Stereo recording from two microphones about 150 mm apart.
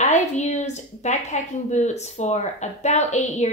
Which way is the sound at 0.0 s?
50° left (ahead or behind).